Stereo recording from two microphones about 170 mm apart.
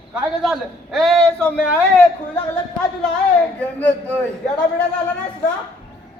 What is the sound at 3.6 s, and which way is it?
Speech, 10° left (ahead or behind).